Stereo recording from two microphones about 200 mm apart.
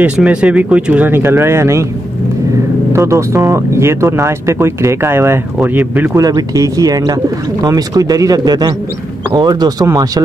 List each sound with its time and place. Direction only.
0.0 s speech: 5° right (ahead or behind)
2.9 s speech: 15° right (ahead or behind)